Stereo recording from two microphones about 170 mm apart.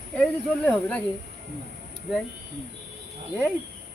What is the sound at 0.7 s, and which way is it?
Speech, 10° left (ahead or behind).